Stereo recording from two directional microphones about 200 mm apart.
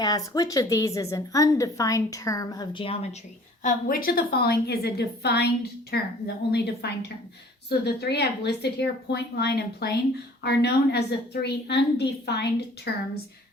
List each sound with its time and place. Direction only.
0.0 s a woman's voice: 20° left (ahead or behind)
3.6 s a woman's voice: 40° left (ahead or behind)